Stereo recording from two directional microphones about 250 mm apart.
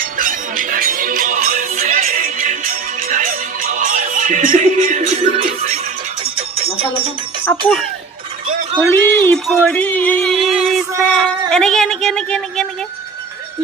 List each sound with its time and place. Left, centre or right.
0.0 s music: right
7.4 s speech: centre
8.9 s music: centre
11.1 s speech: centre